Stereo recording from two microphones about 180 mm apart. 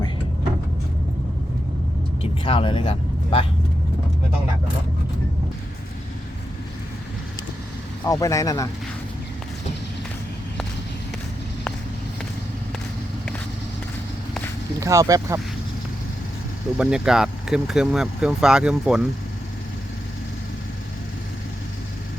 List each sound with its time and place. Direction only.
2.2 s speech: 30° left (ahead or behind)
8.0 s speech: 15° left (ahead or behind)
14.8 s speech: 15° right (ahead or behind)
16.7 s speech: 5° right (ahead or behind)